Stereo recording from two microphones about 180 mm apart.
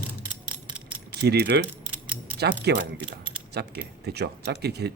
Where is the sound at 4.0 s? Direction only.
65° right (ahead or behind).